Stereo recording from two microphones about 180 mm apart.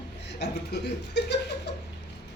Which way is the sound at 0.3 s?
70° left (ahead or behind).